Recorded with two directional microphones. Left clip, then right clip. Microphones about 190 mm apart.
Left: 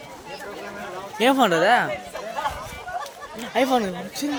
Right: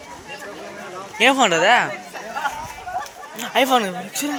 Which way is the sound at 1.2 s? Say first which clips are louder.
Right 3 dB; 30° left (ahead or behind).